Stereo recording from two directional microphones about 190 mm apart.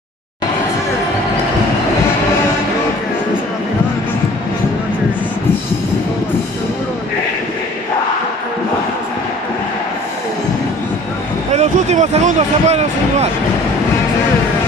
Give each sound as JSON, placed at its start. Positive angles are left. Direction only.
{"t": 11.5, "sound": "speech", "side_deg": -35}